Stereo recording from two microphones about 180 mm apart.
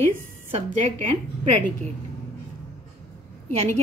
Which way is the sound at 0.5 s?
30° right (ahead or behind).